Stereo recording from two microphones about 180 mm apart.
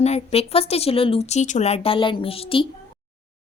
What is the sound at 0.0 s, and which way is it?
Speech, 35° left (ahead or behind).